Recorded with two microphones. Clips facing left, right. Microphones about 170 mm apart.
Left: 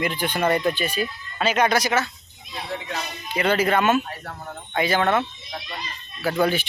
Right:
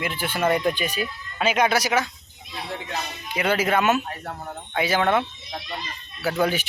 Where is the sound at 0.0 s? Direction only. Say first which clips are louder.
Left 1 dB; 5° right (ahead or behind).